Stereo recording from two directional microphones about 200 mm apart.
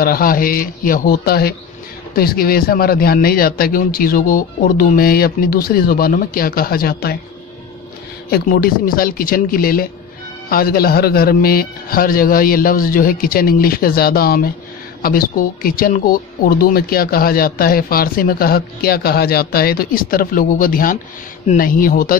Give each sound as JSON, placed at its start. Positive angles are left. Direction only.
{"t": 0.0, "sound": "a woman's voice", "side_deg": 45}
{"t": 8.3, "sound": "a woman's voice", "side_deg": 45}